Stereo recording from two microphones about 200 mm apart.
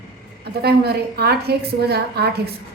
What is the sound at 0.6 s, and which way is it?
A woman's voice, 55° right (ahead or behind).